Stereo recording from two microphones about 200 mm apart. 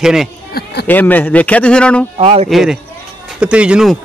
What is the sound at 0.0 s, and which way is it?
Speech, 5° right (ahead or behind).